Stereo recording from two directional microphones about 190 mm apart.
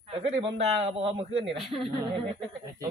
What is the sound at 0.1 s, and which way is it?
A man's voice, 30° right (ahead or behind).